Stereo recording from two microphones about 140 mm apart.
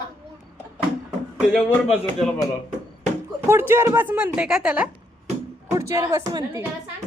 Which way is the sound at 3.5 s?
15° right (ahead or behind).